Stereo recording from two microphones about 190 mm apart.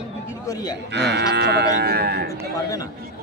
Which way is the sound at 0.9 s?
65° right (ahead or behind).